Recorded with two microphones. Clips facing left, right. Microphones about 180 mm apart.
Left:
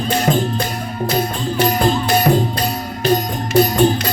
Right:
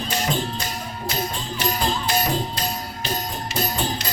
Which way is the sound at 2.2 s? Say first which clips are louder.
Left 9 dB; 60° left (ahead or behind).